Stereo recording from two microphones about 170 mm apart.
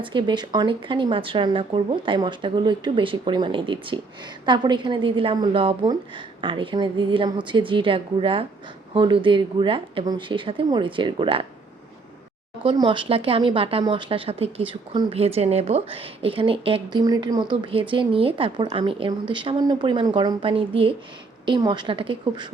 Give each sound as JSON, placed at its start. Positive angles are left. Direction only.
{"t": 0.0, "sound": "a woman's voice", "side_deg": -30}
{"t": 12.7, "sound": "a woman's voice", "side_deg": -30}